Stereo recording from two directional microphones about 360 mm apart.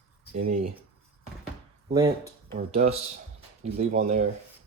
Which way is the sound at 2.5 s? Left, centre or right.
Centre.